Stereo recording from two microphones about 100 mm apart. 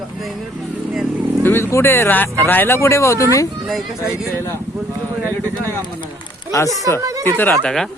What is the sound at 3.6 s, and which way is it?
Speech, 5° right (ahead or behind).